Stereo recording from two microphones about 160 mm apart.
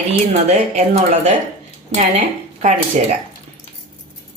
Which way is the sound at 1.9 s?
45° right (ahead or behind).